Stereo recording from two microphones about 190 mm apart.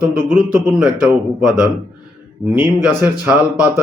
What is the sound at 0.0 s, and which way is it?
Speech, 5° right (ahead or behind).